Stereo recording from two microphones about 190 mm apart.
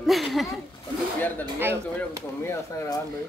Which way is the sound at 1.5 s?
10° right (ahead or behind).